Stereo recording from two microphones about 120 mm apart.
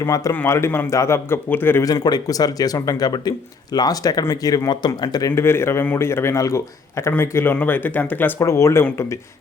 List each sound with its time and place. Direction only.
0.0 s a man's voice: 30° left (ahead or behind)
1.8 s speech: 35° left (ahead or behind)
5.3 s a man's voice: 20° left (ahead or behind)
8.4 s a man's voice: 25° left (ahead or behind)